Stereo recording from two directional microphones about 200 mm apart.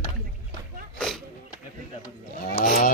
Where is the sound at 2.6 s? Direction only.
45° left (ahead or behind).